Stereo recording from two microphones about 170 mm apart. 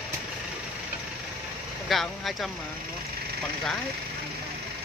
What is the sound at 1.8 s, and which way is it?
Speech, centre (ahead or behind).